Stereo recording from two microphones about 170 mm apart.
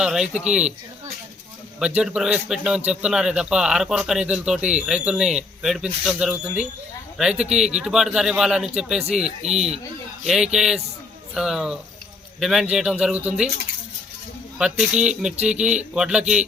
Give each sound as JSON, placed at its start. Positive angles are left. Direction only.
{"t": 0.0, "sound": "a man's voice", "side_deg": -5}
{"t": 1.8, "sound": "a man's voice", "side_deg": -5}
{"t": 9.2, "sound": "speech", "side_deg": -40}
{"t": 10.2, "sound": "a man's voice", "side_deg": -5}
{"t": 14.6, "sound": "a man's voice", "side_deg": -5}